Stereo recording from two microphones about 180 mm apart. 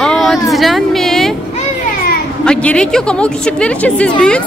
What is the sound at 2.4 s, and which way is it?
A woman's voice, 5° left (ahead or behind).